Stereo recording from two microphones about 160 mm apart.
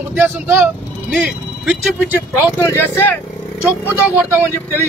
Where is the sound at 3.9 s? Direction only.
15° right (ahead or behind).